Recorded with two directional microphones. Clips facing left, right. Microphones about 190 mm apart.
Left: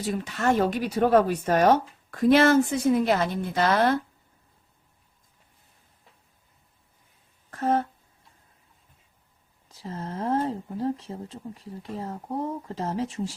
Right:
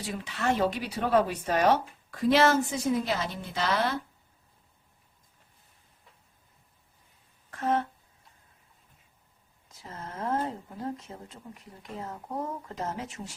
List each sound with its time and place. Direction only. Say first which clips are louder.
0.0 s speech: left 5 dB; 45° left (ahead or behind)
7.5 s a sound: left 3 dB; 40° left (ahead or behind)
9.6 s speech: left 7 dB; 30° left (ahead or behind)